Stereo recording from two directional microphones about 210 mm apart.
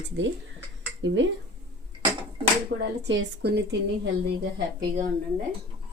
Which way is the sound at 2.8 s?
60° right (ahead or behind).